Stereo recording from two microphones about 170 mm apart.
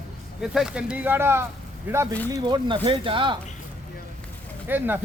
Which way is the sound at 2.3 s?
25° right (ahead or behind).